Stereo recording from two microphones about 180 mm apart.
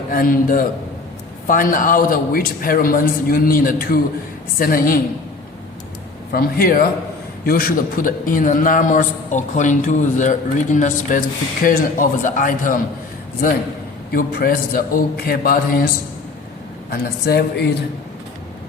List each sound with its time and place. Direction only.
0.1 s a man's voice: 50° left (ahead or behind)
6.3 s a man's voice: 55° left (ahead or behind)
14.1 s a man's voice: 55° left (ahead or behind)
16.9 s a man's voice: 65° left (ahead or behind)